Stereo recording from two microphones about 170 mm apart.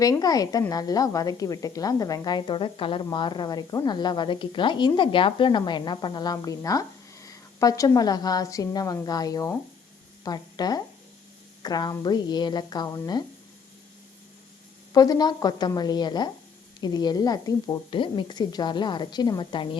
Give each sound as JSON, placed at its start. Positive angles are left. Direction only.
{"t": 0.0, "sound": "speech", "side_deg": 20}
{"t": 14.9, "sound": "speech", "side_deg": 20}